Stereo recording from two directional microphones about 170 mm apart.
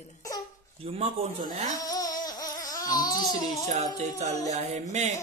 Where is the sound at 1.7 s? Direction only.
20° left (ahead or behind).